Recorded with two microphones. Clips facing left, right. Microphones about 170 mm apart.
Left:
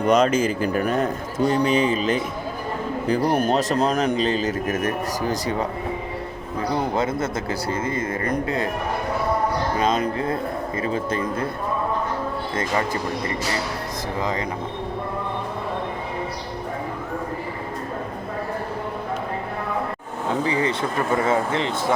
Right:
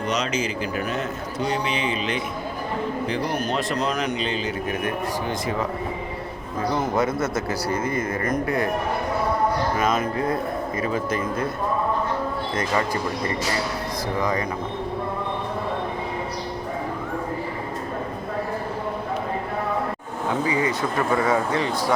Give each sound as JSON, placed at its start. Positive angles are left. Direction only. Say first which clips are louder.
{"t": 0.0, "sound": "a man's voice", "louder": "left 7 dB", "side_deg": 50}
{"t": 6.9, "sound": "speech", "louder": "right 1 dB", "side_deg": 25}
{"t": 9.7, "sound": "speech", "louder": "left 1 dB", "side_deg": 30}
{"t": 14.2, "sound": "speech", "louder": "right 1 dB", "side_deg": 20}
{"t": 20.4, "sound": "speech", "louder": "left 1 dB", "side_deg": 30}